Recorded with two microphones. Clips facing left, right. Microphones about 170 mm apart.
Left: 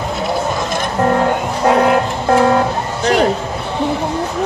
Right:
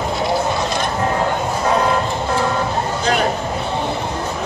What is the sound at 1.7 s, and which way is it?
Music, 65° left (ahead or behind).